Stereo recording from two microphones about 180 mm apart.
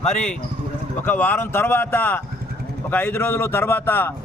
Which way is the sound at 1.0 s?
10° left (ahead or behind).